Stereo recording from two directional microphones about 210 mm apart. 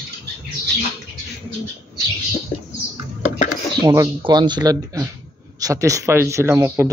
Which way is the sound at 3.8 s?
20° right (ahead or behind).